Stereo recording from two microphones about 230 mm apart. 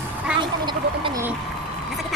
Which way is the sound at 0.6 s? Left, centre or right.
Centre.